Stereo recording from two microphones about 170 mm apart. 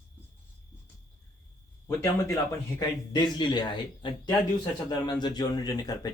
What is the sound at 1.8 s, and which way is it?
A man's voice, 15° left (ahead or behind).